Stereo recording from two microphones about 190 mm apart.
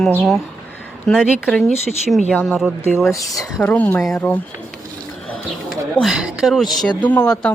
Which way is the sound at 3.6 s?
10° left (ahead or behind).